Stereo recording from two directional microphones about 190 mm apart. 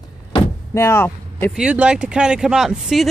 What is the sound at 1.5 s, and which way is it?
Speech, 5° right (ahead or behind).